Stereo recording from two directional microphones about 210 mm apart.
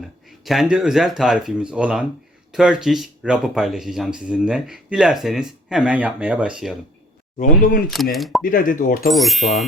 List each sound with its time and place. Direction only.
0.3 s speech: centre (ahead or behind)
7.3 s speech: 40° left (ahead or behind)
8.1 s speech: centre (ahead or behind)
8.4 s speech: 40° left (ahead or behind)
9.0 s speech: centre (ahead or behind)